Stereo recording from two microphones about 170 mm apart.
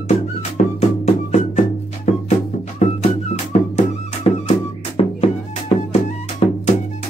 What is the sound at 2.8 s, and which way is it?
Music, 40° left (ahead or behind).